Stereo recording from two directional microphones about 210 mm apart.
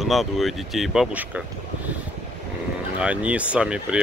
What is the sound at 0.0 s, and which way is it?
Speech, centre (ahead or behind).